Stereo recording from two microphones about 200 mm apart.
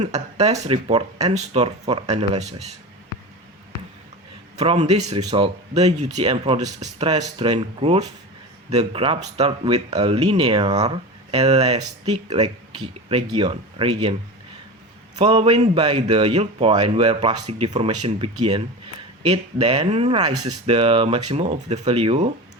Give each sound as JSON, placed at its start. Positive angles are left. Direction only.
{"t": 0.0, "sound": "speech", "side_deg": -35}
{"t": 4.5, "sound": "speech", "side_deg": -30}
{"t": 7.1, "sound": "speech", "side_deg": -25}
{"t": 15.2, "sound": "speech", "side_deg": -30}